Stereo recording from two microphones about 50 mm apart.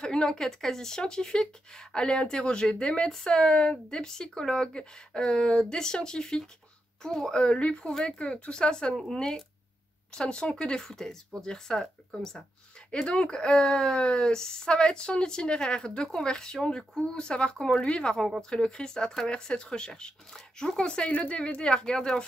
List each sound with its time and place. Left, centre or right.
0.0 s speech: centre
12.9 s speech: centre